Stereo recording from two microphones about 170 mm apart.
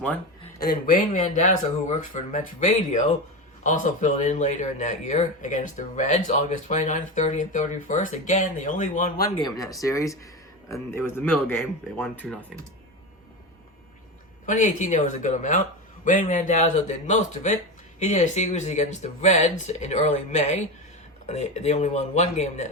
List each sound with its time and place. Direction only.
0.6 s speech: 55° left (ahead or behind)
9.4 s a man's voice: 20° left (ahead or behind)
14.4 s speech: 50° left (ahead or behind)